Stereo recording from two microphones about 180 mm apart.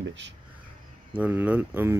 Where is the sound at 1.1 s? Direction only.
10° right (ahead or behind).